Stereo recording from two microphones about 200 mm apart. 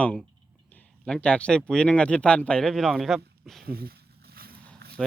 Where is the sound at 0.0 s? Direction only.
5° left (ahead or behind).